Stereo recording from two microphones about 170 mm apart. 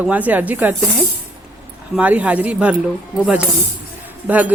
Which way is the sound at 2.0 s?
10° right (ahead or behind).